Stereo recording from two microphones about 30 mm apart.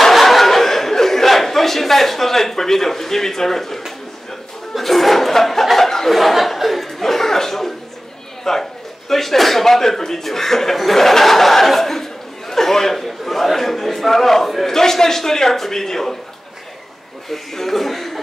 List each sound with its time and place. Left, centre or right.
0.1 s chatter: centre
6.1 s chuckle: centre
8.5 s a sound: centre
9.1 s chuckle: centre
13.0 s a man's voice: centre
14.7 s a man's voice: centre
17.3 s a man's voice: centre